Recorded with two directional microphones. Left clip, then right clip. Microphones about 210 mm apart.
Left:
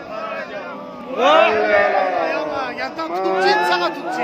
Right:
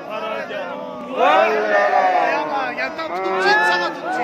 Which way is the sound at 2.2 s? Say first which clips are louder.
Right 2 dB; 30° left (ahead or behind).